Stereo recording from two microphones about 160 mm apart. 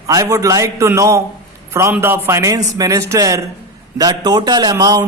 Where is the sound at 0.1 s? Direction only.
20° right (ahead or behind).